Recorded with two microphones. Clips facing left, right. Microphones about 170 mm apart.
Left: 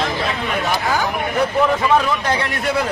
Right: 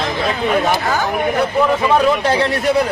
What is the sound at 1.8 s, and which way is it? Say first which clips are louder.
Speech: right 3 dB; 25° right (ahead or behind).